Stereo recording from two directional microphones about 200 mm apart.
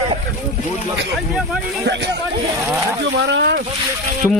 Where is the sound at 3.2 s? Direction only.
60° right (ahead or behind).